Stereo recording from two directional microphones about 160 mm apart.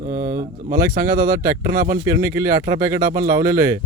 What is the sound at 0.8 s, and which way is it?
Speech, 65° right (ahead or behind).